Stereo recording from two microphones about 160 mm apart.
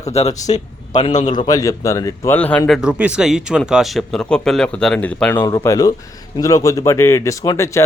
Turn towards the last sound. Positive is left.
turn(degrees=20)  # may be behind; listen again after turning